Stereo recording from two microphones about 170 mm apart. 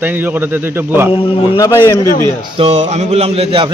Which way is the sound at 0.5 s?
10° right (ahead or behind).